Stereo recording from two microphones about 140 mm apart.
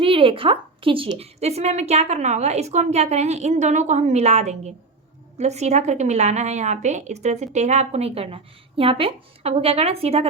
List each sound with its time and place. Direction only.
0.0 s a woman's voice: 40° right (ahead or behind)